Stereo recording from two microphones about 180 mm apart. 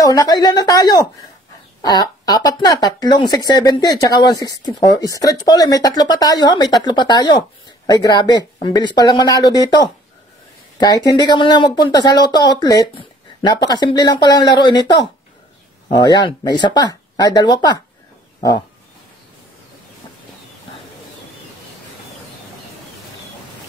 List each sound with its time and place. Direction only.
0.0 s speech: 20° left (ahead or behind)
11.1 s speech: 25° left (ahead or behind)